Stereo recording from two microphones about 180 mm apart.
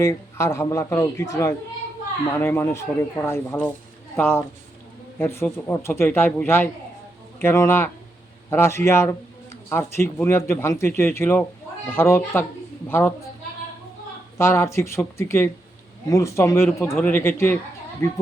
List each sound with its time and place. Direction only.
0.0 s speech: 15° left (ahead or behind)
14.3 s speech: 15° left (ahead or behind)